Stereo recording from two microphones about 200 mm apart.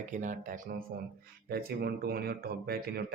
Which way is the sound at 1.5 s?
50° right (ahead or behind).